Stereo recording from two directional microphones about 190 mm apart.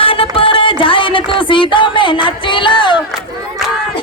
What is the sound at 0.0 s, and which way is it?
Music, 30° left (ahead or behind).